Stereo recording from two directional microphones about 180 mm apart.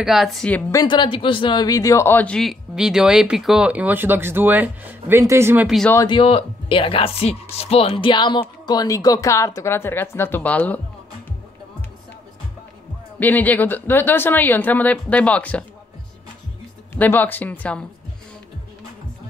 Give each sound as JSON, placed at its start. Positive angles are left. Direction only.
{"t": 0.0, "sound": "speech", "side_deg": 0}
{"t": 0.7, "sound": "speech", "side_deg": 20}
{"t": 5.9, "sound": "speech", "side_deg": 25}
{"t": 13.2, "sound": "speech", "side_deg": 10}
{"t": 16.9, "sound": "speech", "side_deg": 10}